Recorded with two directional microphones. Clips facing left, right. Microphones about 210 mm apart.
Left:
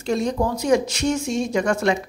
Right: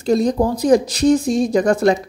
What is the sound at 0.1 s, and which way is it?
Speech, 35° right (ahead or behind).